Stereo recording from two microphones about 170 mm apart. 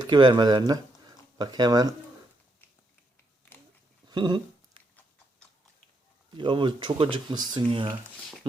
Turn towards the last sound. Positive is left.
turn(degrees=-30)  # may be behind; listen again after turning